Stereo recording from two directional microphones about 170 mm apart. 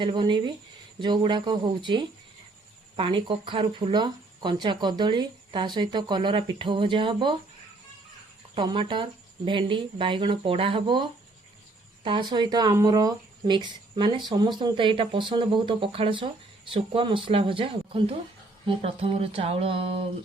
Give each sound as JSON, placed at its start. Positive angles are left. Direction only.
{"t": 0.0, "sound": "speech", "side_deg": -25}
{"t": 8.5, "sound": "speech", "side_deg": -30}